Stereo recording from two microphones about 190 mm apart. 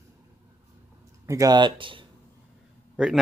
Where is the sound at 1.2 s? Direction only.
20° right (ahead or behind).